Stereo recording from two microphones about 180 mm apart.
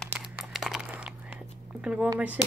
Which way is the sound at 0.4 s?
Centre (ahead or behind).